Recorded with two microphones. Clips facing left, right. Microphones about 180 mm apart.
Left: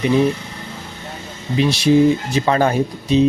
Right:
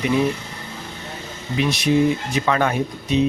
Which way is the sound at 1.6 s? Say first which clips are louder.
Left 5 dB; 30° left (ahead or behind).